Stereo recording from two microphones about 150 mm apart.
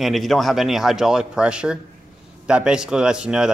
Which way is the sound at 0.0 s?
Centre (ahead or behind).